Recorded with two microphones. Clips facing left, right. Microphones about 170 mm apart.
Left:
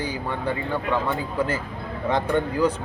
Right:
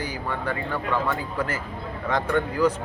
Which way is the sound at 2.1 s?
25° left (ahead or behind).